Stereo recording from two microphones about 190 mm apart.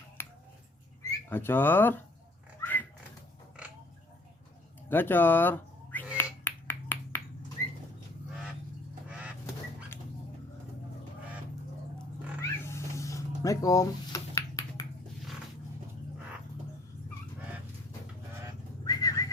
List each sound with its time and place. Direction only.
0.2 s finger snapping: 10° left (ahead or behind)
1.3 s speech: 10° left (ahead or behind)
2.6 s pig: 10° left (ahead or behind)
3.6 s pig: 5° right (ahead or behind)
4.9 s speech: 10° left (ahead or behind)
6.1 s finger snapping: 10° left (ahead or behind)
9.0 s goose: 5° right (ahead or behind)
12.4 s cat: 15° left (ahead or behind)
18.9 s whistling: 20° left (ahead or behind)